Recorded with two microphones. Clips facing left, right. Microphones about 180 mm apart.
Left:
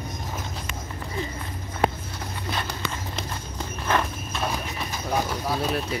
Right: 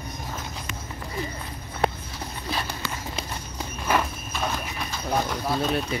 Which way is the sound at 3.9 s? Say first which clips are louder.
Even; centre (ahead or behind).